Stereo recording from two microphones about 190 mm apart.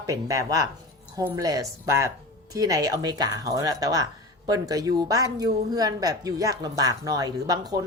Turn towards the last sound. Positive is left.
turn(degrees=-20)  # may be behind; listen again after turning